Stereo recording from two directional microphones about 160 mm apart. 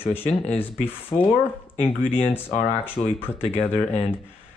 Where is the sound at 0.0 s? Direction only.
15° left (ahead or behind).